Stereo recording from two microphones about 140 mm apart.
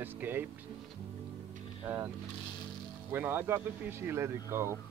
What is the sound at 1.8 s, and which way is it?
Speech, 15° right (ahead or behind).